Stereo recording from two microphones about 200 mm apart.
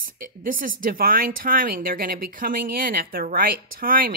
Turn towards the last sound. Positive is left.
turn(degrees=-45)  # may be behind; listen again after turning